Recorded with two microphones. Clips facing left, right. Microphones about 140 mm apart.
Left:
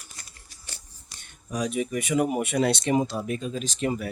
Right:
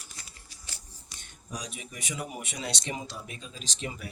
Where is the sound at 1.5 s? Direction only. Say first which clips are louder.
Left 13 dB; 55° left (ahead or behind).